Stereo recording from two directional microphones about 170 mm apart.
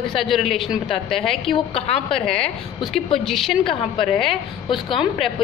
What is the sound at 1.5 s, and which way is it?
Speech, 35° left (ahead or behind).